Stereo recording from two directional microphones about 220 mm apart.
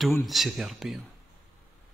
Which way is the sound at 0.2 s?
Centre (ahead or behind).